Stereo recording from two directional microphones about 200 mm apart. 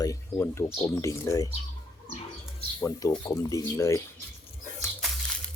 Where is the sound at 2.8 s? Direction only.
15° left (ahead or behind).